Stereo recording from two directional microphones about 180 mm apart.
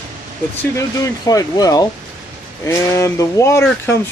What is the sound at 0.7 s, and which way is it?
Speech, 20° left (ahead or behind).